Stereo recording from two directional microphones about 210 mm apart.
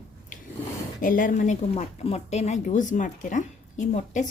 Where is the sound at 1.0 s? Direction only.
40° left (ahead or behind).